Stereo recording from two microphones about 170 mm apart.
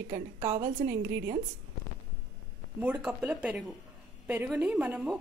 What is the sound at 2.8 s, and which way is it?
A woman's voice, 10° right (ahead or behind).